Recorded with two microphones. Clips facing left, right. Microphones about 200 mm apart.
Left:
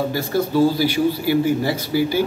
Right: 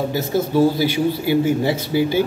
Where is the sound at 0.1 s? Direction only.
20° right (ahead or behind).